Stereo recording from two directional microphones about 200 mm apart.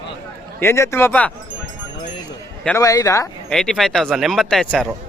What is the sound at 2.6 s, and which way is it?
Speech, 15° left (ahead or behind).